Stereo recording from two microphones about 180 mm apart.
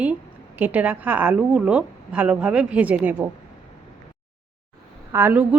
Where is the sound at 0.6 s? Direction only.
10° right (ahead or behind).